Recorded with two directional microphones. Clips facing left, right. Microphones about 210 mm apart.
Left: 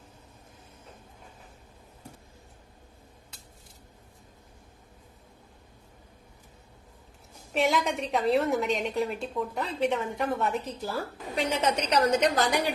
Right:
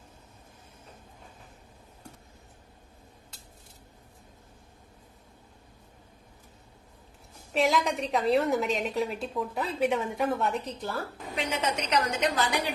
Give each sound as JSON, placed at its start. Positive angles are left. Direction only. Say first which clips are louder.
{"t": 7.5, "sound": "a woman's voice", "louder": "even", "side_deg": 0}
{"t": 11.4, "sound": "a woman's voice", "louder": "left 3 dB", "side_deg": 35}